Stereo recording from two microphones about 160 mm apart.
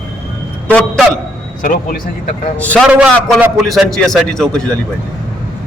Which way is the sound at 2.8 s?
5° right (ahead or behind).